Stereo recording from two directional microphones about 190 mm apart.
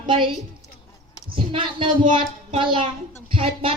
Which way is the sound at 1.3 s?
25° right (ahead or behind).